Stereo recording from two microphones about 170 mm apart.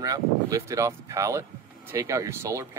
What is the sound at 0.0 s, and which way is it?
Speech, 20° right (ahead or behind).